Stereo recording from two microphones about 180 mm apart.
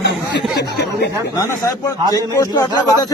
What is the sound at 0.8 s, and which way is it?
Snicker, 65° left (ahead or behind).